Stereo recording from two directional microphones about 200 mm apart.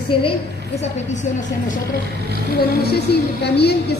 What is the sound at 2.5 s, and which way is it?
A woman's voice, 50° left (ahead or behind).